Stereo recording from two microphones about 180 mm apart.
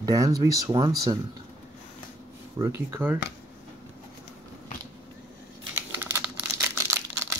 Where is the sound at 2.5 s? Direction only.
15° right (ahead or behind).